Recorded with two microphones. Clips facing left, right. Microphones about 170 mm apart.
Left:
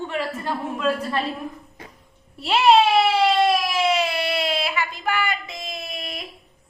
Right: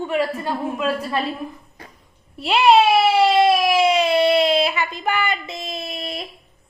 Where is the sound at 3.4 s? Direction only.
10° right (ahead or behind); by 6.2 s 30° right (ahead or behind).